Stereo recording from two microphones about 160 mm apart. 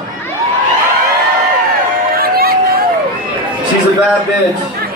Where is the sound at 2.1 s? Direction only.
70° right (ahead or behind).